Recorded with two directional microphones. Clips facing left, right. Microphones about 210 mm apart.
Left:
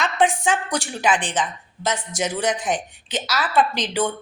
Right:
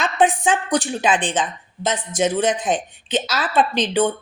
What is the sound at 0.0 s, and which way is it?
Speech, 20° right (ahead or behind).